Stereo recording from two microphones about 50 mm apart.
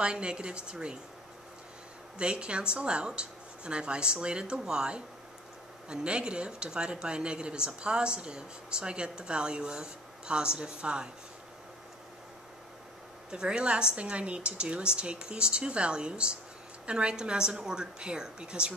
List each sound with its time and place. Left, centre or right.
0.0 s speech: centre
2.1 s speech: right
13.3 s speech: centre